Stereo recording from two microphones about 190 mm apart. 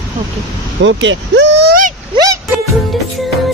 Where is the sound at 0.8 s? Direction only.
75° right (ahead or behind); by 1.9 s 50° right (ahead or behind).